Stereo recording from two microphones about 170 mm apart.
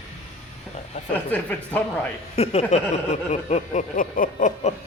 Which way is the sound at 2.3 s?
40° left (ahead or behind).